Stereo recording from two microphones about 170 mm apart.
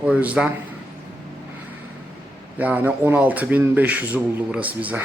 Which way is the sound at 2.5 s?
10° right (ahead or behind).